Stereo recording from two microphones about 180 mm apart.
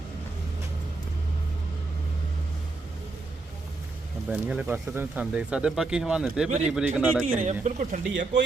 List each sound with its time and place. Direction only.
4.3 s speech: 5° right (ahead or behind)
7.3 s speech: 40° right (ahead or behind)